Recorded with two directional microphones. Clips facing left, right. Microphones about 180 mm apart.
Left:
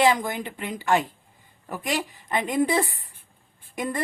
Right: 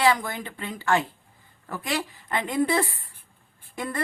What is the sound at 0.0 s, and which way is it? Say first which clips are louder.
A woman's voice: left 2 dB; 20° left (ahead or behind).